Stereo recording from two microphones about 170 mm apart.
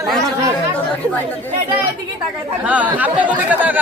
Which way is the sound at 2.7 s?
10° right (ahead or behind).